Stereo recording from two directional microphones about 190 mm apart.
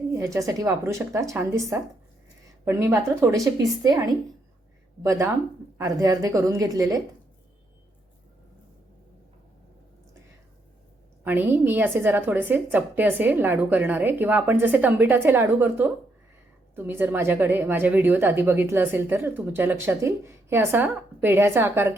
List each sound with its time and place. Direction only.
0.2 s a woman's voice: 15° right (ahead or behind)
11.2 s a woman's voice: 10° right (ahead or behind)